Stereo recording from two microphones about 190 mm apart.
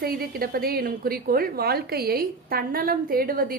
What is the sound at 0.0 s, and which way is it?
A woman's voice, 50° right (ahead or behind).